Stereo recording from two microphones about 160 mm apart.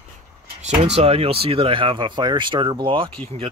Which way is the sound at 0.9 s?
40° right (ahead or behind).